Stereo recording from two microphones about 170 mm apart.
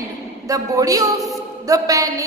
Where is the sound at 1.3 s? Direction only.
20° right (ahead or behind).